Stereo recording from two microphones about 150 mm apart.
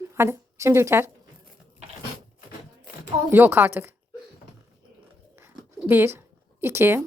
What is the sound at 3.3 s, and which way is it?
Speech, 15° right (ahead or behind).